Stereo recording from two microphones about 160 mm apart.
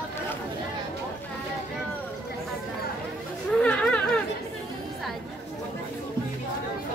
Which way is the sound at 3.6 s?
5° left (ahead or behind).